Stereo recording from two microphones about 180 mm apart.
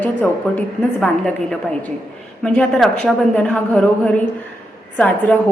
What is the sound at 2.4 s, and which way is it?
A woman's voice, 5° left (ahead or behind).